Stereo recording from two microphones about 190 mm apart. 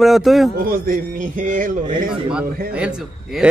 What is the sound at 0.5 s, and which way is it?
A man's voice, 50° right (ahead or behind).